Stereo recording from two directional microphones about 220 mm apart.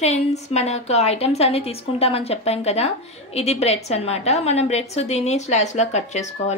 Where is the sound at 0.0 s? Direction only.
30° left (ahead or behind).